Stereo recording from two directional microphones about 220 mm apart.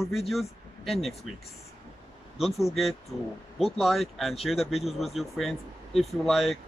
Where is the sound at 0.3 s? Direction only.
Centre (ahead or behind).